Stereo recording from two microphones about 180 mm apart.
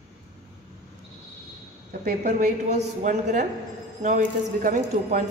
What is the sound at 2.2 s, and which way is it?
A woman's voice, 40° right (ahead or behind).